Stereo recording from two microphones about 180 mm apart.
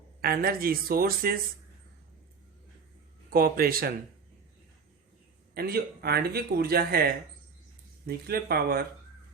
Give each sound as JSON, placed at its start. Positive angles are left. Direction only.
{"t": 0.2, "sound": "a man's voice", "side_deg": -55}
{"t": 3.2, "sound": "a man's voice", "side_deg": -55}
{"t": 5.5, "sound": "a man's voice", "side_deg": -60}